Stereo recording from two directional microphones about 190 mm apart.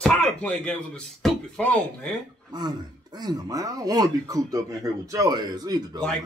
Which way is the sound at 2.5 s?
20° right (ahead or behind).